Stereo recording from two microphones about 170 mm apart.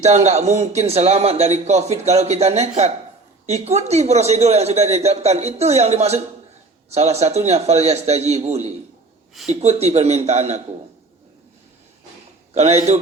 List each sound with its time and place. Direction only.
0.0 s speech: 40° right (ahead or behind)
12.5 s speech: 40° right (ahead or behind)